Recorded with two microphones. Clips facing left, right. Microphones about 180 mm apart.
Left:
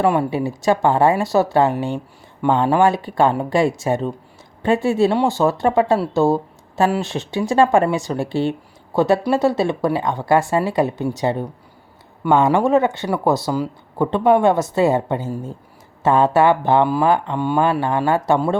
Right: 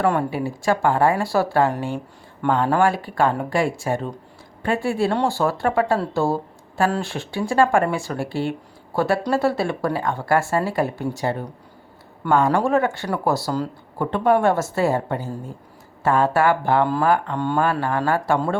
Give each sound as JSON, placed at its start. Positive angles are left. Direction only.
{"t": 0.0, "sound": "speech", "side_deg": 15}
{"t": 17.6, "sound": "speech", "side_deg": 20}